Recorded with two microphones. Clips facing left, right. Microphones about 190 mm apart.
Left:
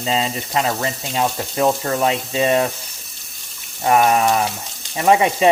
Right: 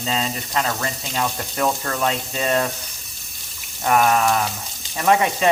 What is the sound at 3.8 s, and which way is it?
Speech, 25° left (ahead or behind).